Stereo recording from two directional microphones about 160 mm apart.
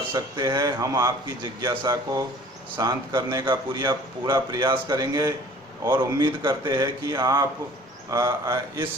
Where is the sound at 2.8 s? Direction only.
25° right (ahead or behind).